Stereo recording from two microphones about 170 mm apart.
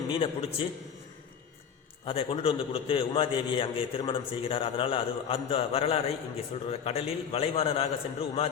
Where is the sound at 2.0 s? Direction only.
35° left (ahead or behind).